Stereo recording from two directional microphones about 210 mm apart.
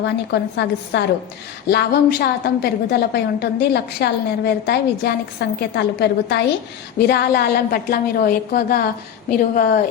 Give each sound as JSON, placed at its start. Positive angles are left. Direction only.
{"t": 0.0, "sound": "a woman's voice", "side_deg": 55}